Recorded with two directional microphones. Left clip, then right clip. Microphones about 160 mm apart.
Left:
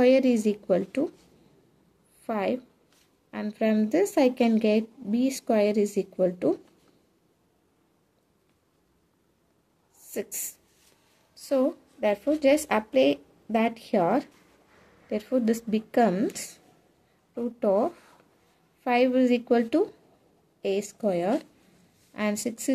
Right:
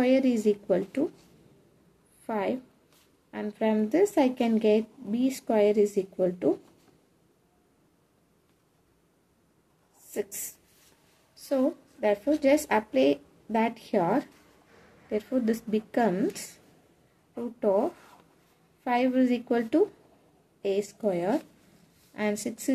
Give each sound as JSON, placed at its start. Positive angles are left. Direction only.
{"t": 0.0, "sound": "speech", "side_deg": 35}
{"t": 2.2, "sound": "a woman's voice", "side_deg": 35}
{"t": 10.0, "sound": "a woman's voice", "side_deg": 40}
{"t": 17.6, "sound": "speech", "side_deg": 35}
{"t": 18.9, "sound": "speech", "side_deg": 35}